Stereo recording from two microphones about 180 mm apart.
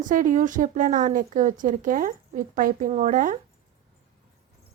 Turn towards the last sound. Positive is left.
turn(degrees=-45)  # may be behind; listen again after turning